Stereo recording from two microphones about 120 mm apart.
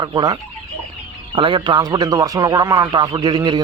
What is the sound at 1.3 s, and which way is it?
Speech, 45° right (ahead or behind).